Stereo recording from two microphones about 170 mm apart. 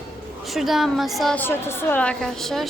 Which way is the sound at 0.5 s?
Centre (ahead or behind).